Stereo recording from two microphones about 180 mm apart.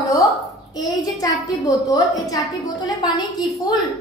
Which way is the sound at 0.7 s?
20° left (ahead or behind).